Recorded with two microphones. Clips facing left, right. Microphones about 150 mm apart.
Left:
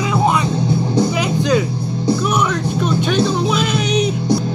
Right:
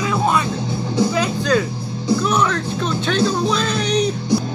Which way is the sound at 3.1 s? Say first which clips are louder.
Right 1 dB; 10° left (ahead or behind).